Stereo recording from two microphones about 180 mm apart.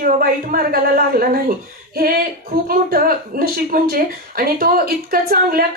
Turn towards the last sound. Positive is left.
turn(degrees=-55)  # may be behind; listen again after turning